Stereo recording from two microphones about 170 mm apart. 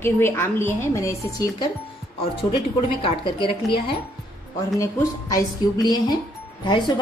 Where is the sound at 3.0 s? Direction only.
30° left (ahead or behind).